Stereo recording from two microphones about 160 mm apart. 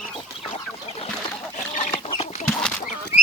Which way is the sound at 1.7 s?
40° left (ahead or behind).